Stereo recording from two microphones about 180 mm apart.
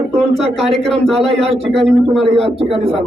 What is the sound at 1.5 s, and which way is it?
Speech, 35° right (ahead or behind).